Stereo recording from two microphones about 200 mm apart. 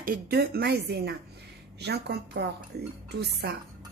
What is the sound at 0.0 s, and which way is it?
A woman's voice, 50° right (ahead or behind).